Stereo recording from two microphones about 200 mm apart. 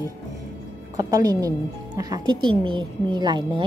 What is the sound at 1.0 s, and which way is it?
Speech, 20° right (ahead or behind).